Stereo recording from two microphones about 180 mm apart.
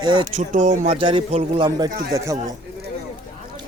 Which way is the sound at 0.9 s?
30° right (ahead or behind).